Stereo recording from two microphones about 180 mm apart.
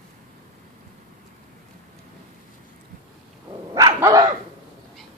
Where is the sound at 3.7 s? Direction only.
20° right (ahead or behind).